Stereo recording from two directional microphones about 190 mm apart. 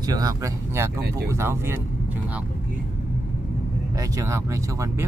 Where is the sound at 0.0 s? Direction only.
20° right (ahead or behind).